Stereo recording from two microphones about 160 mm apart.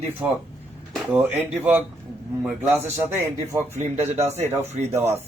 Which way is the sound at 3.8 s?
45° right (ahead or behind).